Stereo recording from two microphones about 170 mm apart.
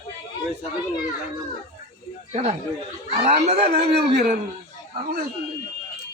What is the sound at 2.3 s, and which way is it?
A man's voice, 40° right (ahead or behind).